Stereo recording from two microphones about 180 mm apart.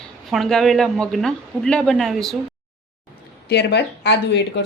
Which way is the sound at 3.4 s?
70° left (ahead or behind).